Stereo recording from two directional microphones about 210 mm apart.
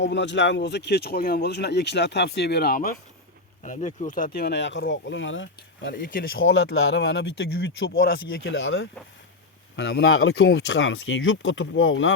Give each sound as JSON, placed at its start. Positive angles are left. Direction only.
{"t": 0.0, "sound": "speech", "side_deg": 60}
{"t": 5.9, "sound": "speech", "side_deg": 45}
{"t": 6.4, "sound": "speech", "side_deg": 55}
{"t": 9.7, "sound": "speech", "side_deg": 50}